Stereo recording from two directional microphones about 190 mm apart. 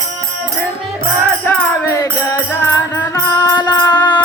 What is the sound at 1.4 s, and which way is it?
Music, 10° left (ahead or behind).